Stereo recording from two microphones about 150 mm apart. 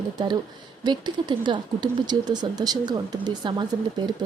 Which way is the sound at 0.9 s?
30° right (ahead or behind).